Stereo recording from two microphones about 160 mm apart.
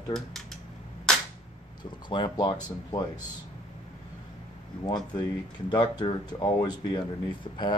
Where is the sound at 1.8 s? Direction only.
30° left (ahead or behind).